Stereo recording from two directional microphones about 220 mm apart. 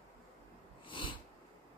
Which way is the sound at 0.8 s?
20° left (ahead or behind).